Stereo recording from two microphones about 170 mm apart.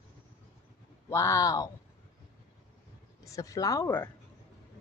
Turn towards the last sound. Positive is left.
turn(degrees=15)  # may be behind; listen again after turning